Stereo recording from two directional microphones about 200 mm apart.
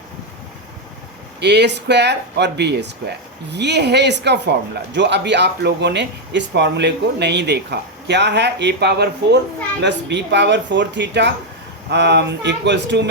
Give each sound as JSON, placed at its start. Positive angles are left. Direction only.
{"t": 1.4, "sound": "speech", "side_deg": -60}